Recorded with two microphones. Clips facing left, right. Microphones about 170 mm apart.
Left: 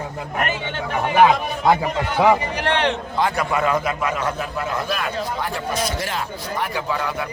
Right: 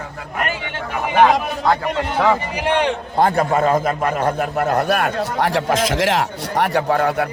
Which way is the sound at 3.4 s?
30° right (ahead or behind).